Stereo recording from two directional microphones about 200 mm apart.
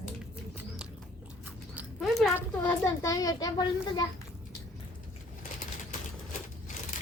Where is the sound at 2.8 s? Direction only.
15° left (ahead or behind).